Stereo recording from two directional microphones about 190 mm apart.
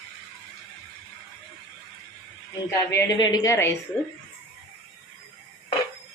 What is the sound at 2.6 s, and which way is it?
Speech, 15° left (ahead or behind).